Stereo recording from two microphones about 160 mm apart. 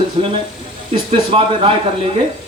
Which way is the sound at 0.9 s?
35° right (ahead or behind).